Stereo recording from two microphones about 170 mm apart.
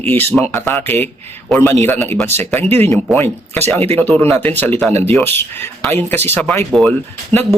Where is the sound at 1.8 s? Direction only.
10° left (ahead or behind).